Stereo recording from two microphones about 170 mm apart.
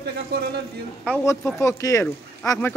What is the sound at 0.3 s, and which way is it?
Speech, 65° right (ahead or behind).